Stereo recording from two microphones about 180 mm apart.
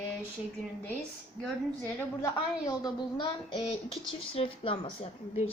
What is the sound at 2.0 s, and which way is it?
A woman's voice, 20° left (ahead or behind).